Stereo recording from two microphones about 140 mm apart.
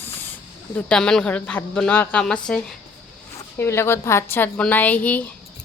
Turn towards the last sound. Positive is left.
turn(degrees=10)  # may be behind; listen again after turning